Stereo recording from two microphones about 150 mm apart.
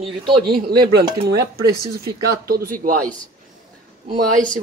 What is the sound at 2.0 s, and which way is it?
Speech, 85° right.